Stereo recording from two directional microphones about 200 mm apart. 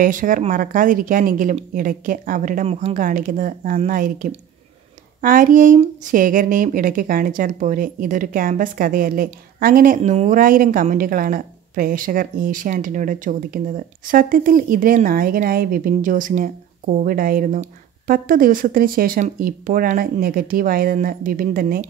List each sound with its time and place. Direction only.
0.0 s a woman's voice: 40° right (ahead or behind)
3.0 s a woman's voice: 45° right (ahead or behind)